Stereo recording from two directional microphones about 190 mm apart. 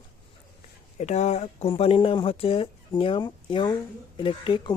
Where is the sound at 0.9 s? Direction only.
35° left (ahead or behind).